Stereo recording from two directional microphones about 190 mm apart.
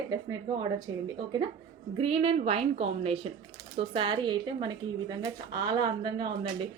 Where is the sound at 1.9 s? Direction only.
30° right (ahead or behind).